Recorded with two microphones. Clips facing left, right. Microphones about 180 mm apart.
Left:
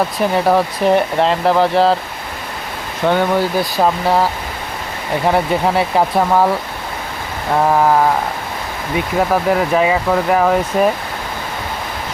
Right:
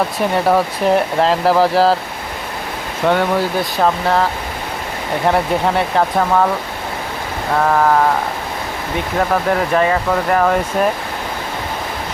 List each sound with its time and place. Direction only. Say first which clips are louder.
0.2 s speech: left 1 dB; centre (ahead or behind)
3.0 s speech: left 1 dB; centre (ahead or behind)
5.3 s speech: left 1 dB; 5° left (ahead or behind)
7.6 s sheep: left 1 dB; 10° left (ahead or behind)
9.3 s speech: left 1 dB; 5° left (ahead or behind)